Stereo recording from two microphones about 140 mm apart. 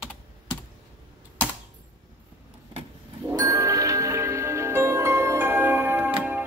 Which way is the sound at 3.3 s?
25° right (ahead or behind).